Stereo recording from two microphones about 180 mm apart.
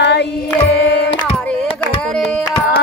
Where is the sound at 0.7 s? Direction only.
70° left (ahead or behind).